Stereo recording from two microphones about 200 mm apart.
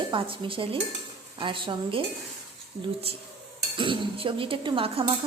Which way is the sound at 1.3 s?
25° right (ahead or behind).